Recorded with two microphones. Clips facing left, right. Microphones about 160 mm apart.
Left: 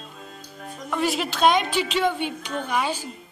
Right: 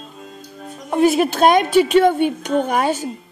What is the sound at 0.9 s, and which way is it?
Speech, 50° right (ahead or behind).